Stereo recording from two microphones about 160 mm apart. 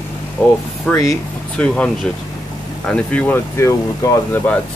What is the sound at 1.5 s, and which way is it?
Speech, 5° left (ahead or behind).